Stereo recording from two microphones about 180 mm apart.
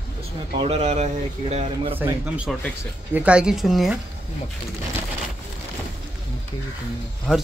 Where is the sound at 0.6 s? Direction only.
35° right (ahead or behind).